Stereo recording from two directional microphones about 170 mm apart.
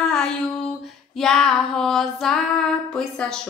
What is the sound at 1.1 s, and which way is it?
Female singing, 5° left (ahead or behind).